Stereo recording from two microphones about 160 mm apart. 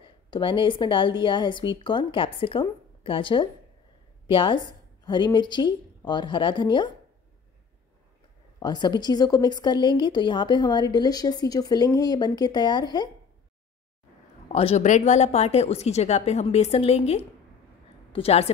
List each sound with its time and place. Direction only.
0.0 s a woman's voice: 30° left (ahead or behind)
8.5 s a woman's voice: 25° left (ahead or behind)
14.5 s speech: 40° left (ahead or behind)